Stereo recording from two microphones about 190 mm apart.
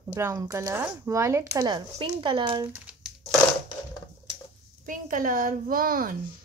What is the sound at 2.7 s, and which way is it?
Crumpling, 5° right (ahead or behind).